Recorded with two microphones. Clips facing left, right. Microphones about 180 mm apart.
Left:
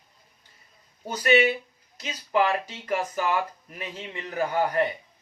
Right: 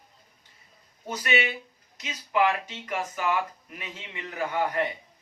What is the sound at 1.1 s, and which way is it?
Speech, 35° left (ahead or behind).